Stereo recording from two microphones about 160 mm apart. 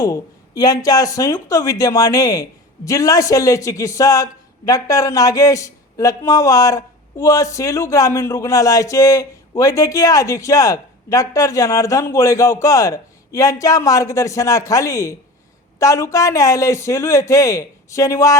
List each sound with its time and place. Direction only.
0.0 s speech: 20° left (ahead or behind)